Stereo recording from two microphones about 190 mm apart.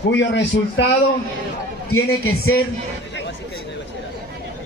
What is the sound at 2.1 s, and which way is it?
Speech, 90° left.